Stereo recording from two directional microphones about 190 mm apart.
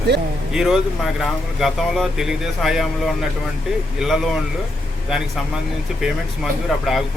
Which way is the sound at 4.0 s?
Centre (ahead or behind).